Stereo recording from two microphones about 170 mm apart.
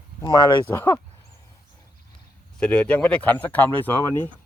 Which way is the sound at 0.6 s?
15° left (ahead or behind).